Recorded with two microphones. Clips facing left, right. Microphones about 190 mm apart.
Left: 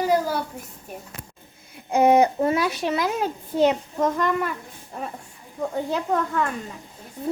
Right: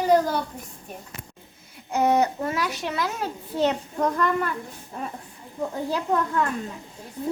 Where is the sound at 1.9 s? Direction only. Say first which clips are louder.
Left 4 dB; 15° left (ahead or behind).